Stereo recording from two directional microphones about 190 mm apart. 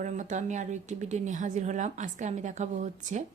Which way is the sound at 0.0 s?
40° right (ahead or behind).